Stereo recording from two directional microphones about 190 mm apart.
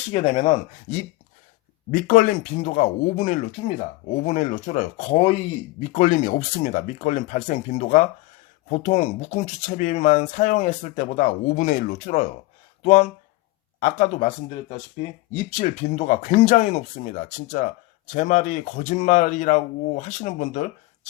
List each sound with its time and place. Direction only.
0.1 s speech: 35° left (ahead or behind)